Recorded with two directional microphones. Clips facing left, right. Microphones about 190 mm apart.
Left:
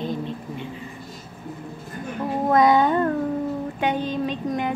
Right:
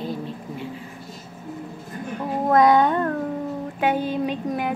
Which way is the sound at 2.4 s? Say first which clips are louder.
Right 1 dB; centre (ahead or behind).